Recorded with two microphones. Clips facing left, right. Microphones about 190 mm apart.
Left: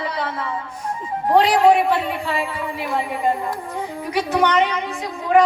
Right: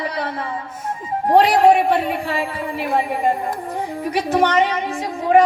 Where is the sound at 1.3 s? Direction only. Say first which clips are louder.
Right 1 dB; 35° right (ahead or behind).